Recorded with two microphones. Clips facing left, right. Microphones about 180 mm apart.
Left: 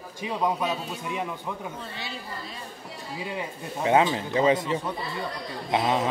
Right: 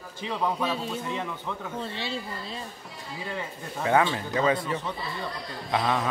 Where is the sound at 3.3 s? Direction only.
15° left (ahead or behind).